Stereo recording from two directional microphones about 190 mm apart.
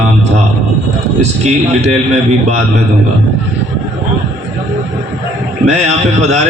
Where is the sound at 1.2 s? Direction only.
35° right (ahead or behind).